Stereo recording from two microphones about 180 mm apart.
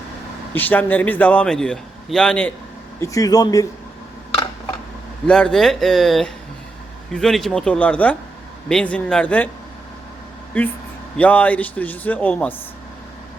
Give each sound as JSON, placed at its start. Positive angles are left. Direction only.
{"t": 0.5, "sound": "a man's voice", "side_deg": 10}
{"t": 3.0, "sound": "a man's voice", "side_deg": 20}
{"t": 5.2, "sound": "a man's voice", "side_deg": 5}
{"t": 10.5, "sound": "a man's voice", "side_deg": 10}